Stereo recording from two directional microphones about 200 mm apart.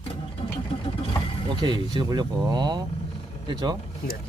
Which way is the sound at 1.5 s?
25° right (ahead or behind).